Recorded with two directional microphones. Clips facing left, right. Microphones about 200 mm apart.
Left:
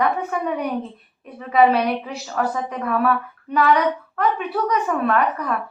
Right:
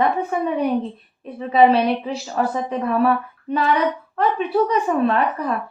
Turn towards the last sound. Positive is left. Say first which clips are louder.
# right 1 dB
turn(degrees=-30)  # may be behind; listen again after turning